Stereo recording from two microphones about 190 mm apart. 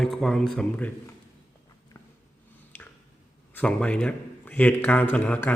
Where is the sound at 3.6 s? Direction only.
5° left (ahead or behind).